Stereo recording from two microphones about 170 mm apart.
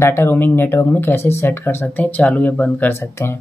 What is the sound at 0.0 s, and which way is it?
Speech, 15° left (ahead or behind).